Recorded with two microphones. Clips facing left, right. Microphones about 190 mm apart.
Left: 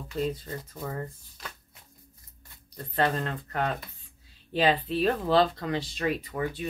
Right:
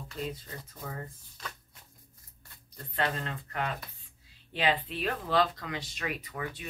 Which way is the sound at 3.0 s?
45° left (ahead or behind).